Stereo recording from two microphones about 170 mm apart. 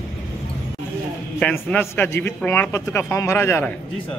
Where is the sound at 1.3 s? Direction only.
10° left (ahead or behind).